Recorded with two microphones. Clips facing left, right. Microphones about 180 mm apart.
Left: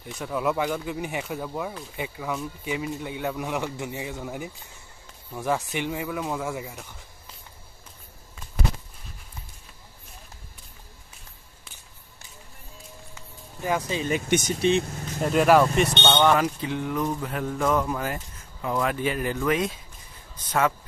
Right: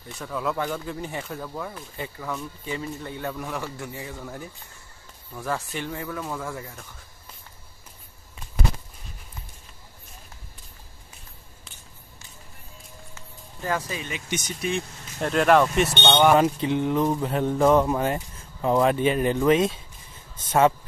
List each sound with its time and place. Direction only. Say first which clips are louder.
0.3 s speech: left 2 dB; 15° left (ahead or behind)
13.1 s music: left 1 dB; 15° left (ahead or behind)
14.0 s speech: left 8 dB; 45° left (ahead or behind)
14.6 s speech: left 5 dB; 20° left (ahead or behind)
15.2 s speech: left 1 dB; 5° left (ahead or behind)
16.3 s speech: right 5 dB; 20° right (ahead or behind)